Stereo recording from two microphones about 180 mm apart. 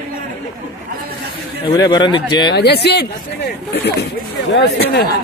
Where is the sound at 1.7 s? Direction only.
25° left (ahead or behind).